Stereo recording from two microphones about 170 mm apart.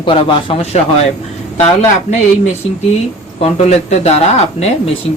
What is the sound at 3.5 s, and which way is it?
Speech, 40° left (ahead or behind).